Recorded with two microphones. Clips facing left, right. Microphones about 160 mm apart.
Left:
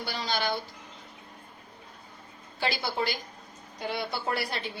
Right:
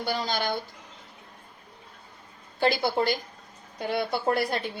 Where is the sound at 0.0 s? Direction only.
50° right (ahead or behind).